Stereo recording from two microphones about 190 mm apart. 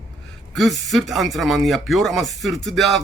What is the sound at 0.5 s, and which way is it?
Speech, centre (ahead or behind).